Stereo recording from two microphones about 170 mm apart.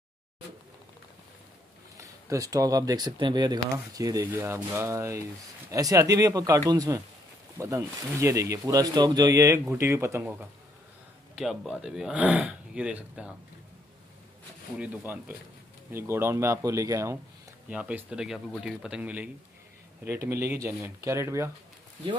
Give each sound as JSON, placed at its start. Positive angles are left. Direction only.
{"t": 2.0, "sound": "speech", "side_deg": -20}
{"t": 11.3, "sound": "speech", "side_deg": -5}
{"t": 14.8, "sound": "speech", "side_deg": -10}
{"t": 17.6, "sound": "speech", "side_deg": -5}